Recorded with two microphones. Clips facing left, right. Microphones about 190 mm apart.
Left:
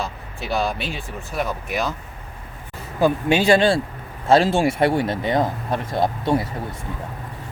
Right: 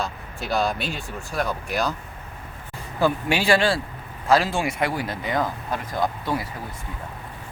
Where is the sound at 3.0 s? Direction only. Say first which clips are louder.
Left 4 dB; 20° left (ahead or behind).